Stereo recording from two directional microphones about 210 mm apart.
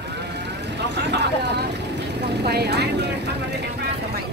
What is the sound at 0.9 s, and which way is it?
Speech, 55° right (ahead or behind).